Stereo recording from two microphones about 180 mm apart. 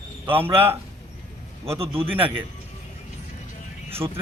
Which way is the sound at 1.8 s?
30° right (ahead or behind).